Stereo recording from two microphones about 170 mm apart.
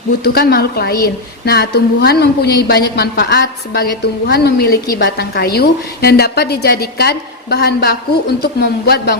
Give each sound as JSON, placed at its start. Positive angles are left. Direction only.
{"t": 0.3, "sound": "a woman's voice", "side_deg": 65}